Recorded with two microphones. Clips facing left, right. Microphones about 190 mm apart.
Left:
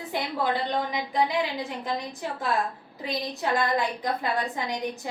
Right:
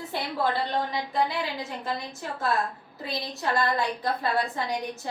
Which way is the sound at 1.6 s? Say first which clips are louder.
Left 2 dB; 15° left (ahead or behind).